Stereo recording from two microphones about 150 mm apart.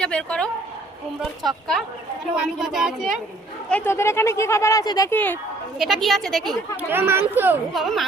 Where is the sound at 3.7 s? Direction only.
15° left (ahead or behind).